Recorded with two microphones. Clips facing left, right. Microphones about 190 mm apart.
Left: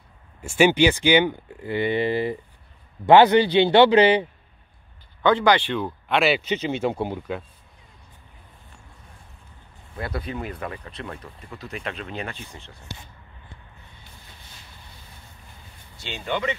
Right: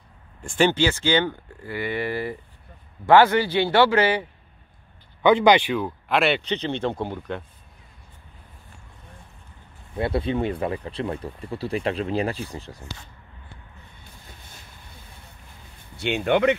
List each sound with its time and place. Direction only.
0.4 s a man's voice: 10° left (ahead or behind)
5.2 s speech: 15° right (ahead or behind)
5.8 s speech: centre (ahead or behind)
9.9 s speech: 25° right (ahead or behind)
16.0 s speech: 65° right (ahead or behind)